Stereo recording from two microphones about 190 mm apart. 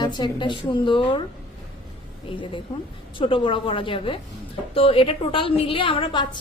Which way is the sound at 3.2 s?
25° left (ahead or behind).